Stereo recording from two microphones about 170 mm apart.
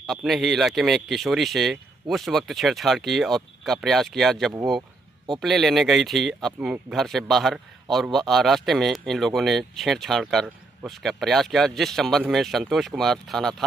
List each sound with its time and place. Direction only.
0.0 s speech: centre (ahead or behind)